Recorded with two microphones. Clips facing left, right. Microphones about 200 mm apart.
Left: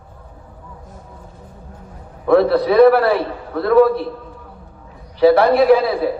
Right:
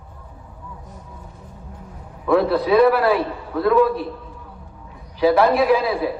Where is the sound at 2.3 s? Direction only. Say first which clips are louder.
Left 3 dB; 40° left (ahead or behind).